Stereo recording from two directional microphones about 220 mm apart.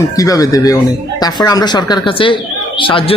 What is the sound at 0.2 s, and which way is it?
A man's voice, 15° left (ahead or behind).